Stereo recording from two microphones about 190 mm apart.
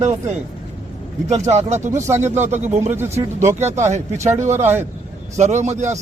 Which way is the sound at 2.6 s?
35° right (ahead or behind).